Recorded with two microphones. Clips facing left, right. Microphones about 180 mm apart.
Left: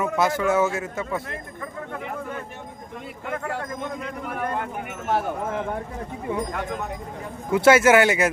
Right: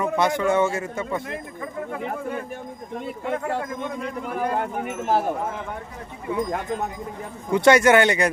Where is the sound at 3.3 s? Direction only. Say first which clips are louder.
Right 3 dB; centre (ahead or behind).